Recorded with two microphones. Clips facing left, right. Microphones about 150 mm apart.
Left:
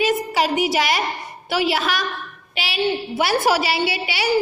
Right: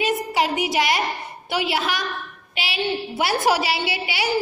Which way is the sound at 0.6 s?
20° right (ahead or behind).